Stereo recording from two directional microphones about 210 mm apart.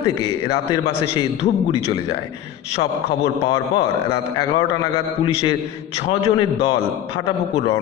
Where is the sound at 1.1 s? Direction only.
30° left (ahead or behind).